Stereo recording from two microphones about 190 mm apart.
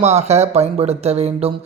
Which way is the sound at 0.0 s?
35° right (ahead or behind).